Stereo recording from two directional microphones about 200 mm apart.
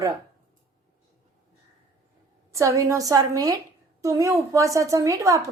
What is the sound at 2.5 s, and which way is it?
A woman's voice, 15° right (ahead or behind).